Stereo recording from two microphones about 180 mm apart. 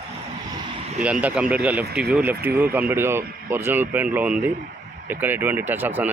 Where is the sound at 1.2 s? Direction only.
5° right (ahead or behind).